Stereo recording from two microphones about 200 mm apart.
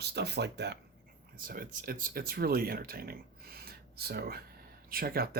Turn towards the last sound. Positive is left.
turn(degrees=-50)  # may be behind; listen again after turning